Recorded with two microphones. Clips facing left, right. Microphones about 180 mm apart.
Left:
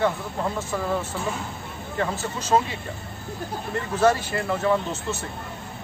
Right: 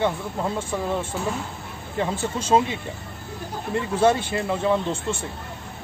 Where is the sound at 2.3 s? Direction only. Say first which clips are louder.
Right 2 dB; 25° right (ahead or behind).